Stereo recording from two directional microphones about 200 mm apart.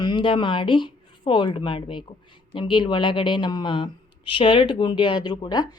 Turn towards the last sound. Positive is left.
turn(degrees=20)  # may be behind; listen again after turning